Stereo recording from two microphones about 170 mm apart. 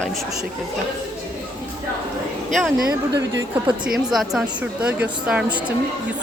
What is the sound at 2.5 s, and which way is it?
Speech, centre (ahead or behind).